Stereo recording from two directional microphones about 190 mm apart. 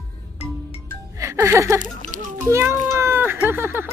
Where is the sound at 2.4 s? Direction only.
15° right (ahead or behind).